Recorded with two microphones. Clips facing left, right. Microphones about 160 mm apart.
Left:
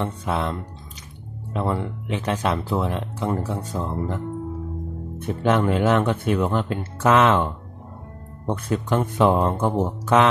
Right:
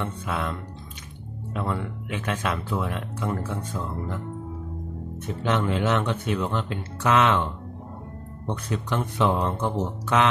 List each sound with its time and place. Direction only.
0.0 s speech: 35° left (ahead or behind)
5.2 s speech: 50° left (ahead or behind)